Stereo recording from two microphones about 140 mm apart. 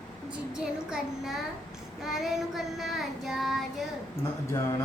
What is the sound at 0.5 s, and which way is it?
Child singing, 5° right (ahead or behind).